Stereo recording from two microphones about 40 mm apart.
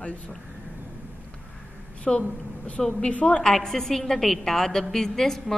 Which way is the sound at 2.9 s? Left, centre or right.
Left.